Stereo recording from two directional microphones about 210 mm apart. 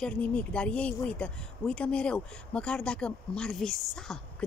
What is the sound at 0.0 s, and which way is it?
Speech, 5° left (ahead or behind).